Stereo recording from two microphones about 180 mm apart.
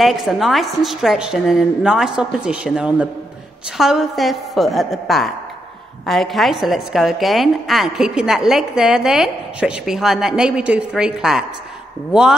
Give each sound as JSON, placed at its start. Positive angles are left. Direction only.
{"t": 0.0, "sound": "a woman's voice", "side_deg": 0}